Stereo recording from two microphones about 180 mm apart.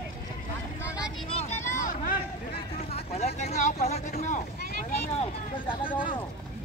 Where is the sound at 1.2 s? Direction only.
35° left (ahead or behind).